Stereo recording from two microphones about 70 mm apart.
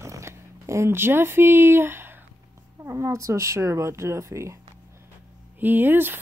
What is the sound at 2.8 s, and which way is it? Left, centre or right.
Speech, right.